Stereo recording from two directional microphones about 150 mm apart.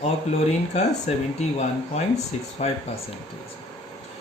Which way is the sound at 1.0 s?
50° left (ahead or behind).